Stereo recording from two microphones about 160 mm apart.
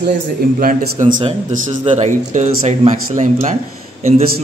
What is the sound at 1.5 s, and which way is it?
A man's voice, 45° right (ahead or behind).